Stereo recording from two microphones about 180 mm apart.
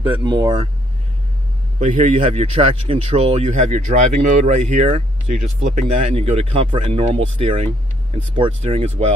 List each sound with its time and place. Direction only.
0.1 s speech: 25° right (ahead or behind)
1.8 s speech: 35° right (ahead or behind)